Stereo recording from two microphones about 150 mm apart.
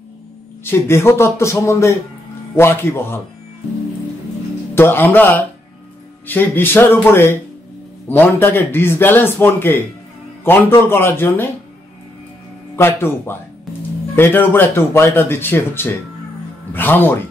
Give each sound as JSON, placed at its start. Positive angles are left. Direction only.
{"t": 0.7, "sound": "speech", "side_deg": 15}
{"t": 4.7, "sound": "speech", "side_deg": 15}
{"t": 12.7, "sound": "speech", "side_deg": 15}